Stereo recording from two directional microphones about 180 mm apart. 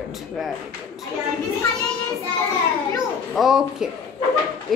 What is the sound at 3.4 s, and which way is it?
Speech, centre (ahead or behind).